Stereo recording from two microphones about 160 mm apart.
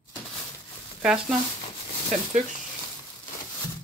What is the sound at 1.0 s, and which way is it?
Speech, 5° right (ahead or behind).